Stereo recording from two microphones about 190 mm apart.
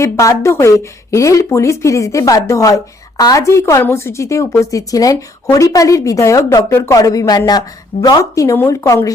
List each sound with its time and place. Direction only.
0.0 s speech: 15° left (ahead or behind)